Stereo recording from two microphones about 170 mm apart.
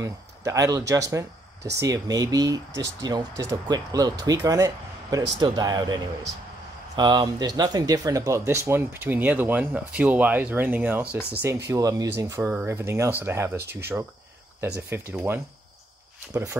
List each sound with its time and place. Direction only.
0.0 s speech: 20° right (ahead or behind)
7.0 s speech: 25° right (ahead or behind)